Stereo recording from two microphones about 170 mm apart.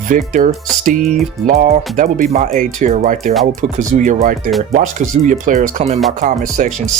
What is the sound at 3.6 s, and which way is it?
Speech, 50° right (ahead or behind).